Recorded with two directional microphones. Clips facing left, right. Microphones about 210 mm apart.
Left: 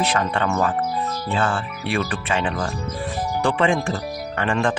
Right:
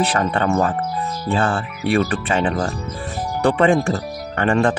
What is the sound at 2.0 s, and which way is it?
Speech, 40° right (ahead or behind).